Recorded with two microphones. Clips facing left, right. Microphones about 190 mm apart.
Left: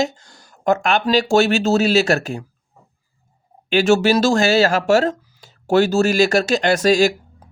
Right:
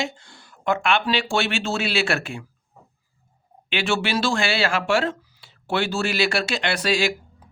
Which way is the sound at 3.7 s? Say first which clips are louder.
Left 10 dB; 40° left (ahead or behind).